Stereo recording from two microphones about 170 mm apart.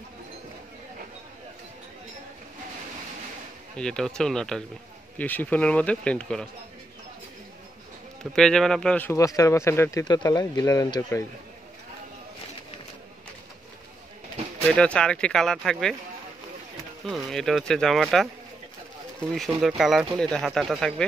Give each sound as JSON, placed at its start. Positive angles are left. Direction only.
{"t": 3.7, "sound": "speech", "side_deg": 5}
{"t": 8.2, "sound": "speech", "side_deg": 5}
{"t": 14.7, "sound": "speech", "side_deg": 5}
{"t": 17.0, "sound": "speech", "side_deg": 0}
{"t": 19.3, "sound": "speech", "side_deg": 0}